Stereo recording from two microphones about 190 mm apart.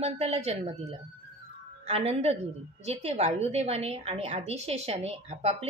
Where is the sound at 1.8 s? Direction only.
35° right (ahead or behind).